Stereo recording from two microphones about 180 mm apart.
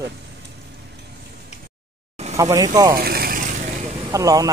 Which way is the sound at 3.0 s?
55° right (ahead or behind).